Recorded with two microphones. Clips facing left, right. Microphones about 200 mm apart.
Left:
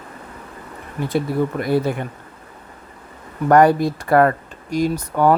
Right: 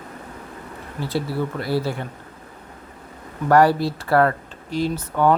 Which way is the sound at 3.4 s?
20° left (ahead or behind).